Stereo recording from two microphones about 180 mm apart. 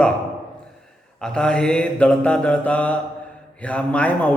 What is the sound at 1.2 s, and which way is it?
Mantra, 5° left (ahead or behind).